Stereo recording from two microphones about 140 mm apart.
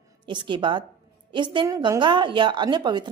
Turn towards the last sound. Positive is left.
turn(degrees=-30)  # may be behind; listen again after turning